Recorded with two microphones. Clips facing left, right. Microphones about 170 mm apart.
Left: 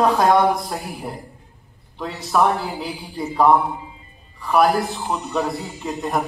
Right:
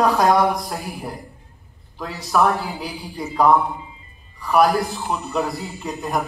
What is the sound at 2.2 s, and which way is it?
A man's voice, centre (ahead or behind).